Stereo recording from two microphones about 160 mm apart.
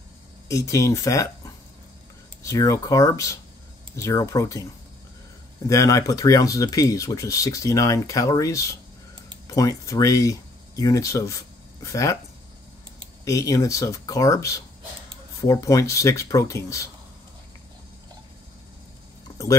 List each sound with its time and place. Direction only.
0.5 s speech: 20° left (ahead or behind)
5.7 s speech: 20° left (ahead or behind)
13.2 s speech: 20° left (ahead or behind)